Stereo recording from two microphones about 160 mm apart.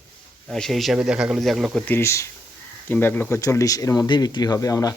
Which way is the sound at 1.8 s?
15° left (ahead or behind).